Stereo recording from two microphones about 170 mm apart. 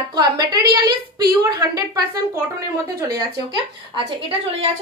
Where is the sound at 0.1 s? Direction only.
25° right (ahead or behind).